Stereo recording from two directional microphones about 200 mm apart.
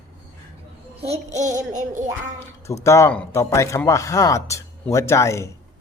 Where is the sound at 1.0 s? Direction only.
35° right (ahead or behind).